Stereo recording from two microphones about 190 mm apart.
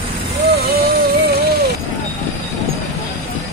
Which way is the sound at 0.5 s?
55° right (ahead or behind).